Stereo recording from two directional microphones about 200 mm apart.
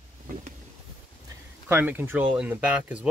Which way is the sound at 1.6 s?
10° right (ahead or behind).